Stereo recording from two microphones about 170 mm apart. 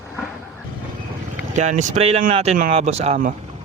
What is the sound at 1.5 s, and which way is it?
Speech, 45° right (ahead or behind).